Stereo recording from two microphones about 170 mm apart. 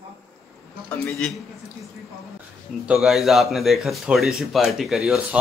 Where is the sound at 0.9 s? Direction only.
5° left (ahead or behind).